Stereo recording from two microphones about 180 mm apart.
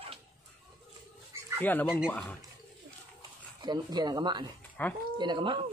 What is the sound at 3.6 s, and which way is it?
Speech, 25° right (ahead or behind).